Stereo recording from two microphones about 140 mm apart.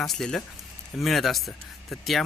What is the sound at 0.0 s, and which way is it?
Speech, centre (ahead or behind).